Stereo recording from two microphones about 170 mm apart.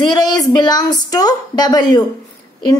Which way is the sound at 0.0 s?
25° left (ahead or behind).